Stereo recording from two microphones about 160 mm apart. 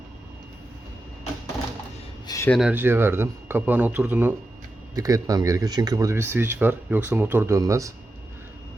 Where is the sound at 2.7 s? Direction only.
15° right (ahead or behind).